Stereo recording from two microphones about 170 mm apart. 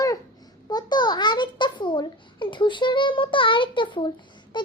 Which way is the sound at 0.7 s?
25° left (ahead or behind).